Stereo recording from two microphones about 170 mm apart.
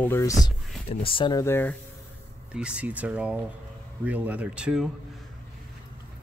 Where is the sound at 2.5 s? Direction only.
5° right (ahead or behind).